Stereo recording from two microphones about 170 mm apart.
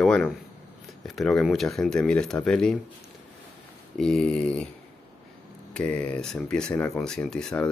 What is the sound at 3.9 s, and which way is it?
Speech, 5° left (ahead or behind).